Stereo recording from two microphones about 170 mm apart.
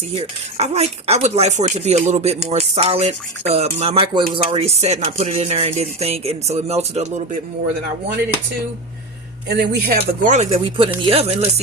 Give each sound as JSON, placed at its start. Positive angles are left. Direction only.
{"t": 0.2, "sound": "speech", "side_deg": -35}
{"t": 9.5, "sound": "speech", "side_deg": -60}